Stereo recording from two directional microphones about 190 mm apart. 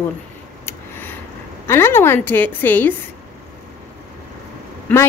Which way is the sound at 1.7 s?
10° left (ahead or behind).